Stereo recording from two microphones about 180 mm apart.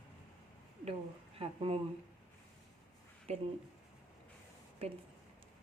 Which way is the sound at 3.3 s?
35° right (ahead or behind).